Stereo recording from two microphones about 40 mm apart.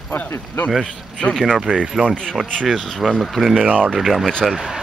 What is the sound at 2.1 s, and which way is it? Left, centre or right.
Speech, centre.